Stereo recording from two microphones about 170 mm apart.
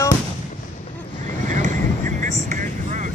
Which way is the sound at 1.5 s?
45° right (ahead or behind).